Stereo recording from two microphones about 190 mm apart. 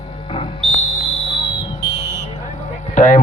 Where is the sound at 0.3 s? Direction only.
25° left (ahead or behind).